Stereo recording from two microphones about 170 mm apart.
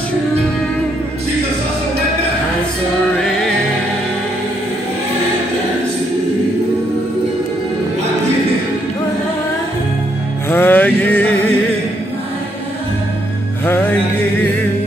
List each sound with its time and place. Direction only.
10.5 s music: 10° left (ahead or behind)